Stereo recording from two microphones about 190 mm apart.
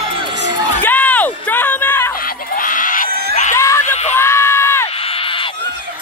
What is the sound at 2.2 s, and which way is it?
Goat, 45° left (ahead or behind).